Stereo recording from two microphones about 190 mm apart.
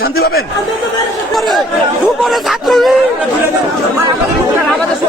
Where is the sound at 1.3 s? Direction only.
Centre (ahead or behind).